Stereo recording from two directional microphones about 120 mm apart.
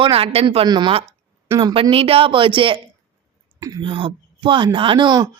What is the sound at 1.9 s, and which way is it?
Speech, 50° right (ahead or behind).